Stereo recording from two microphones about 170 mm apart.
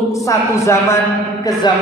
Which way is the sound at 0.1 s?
20° left (ahead or behind).